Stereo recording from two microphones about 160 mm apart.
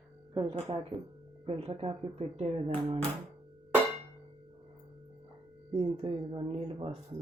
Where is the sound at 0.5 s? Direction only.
35° right (ahead or behind).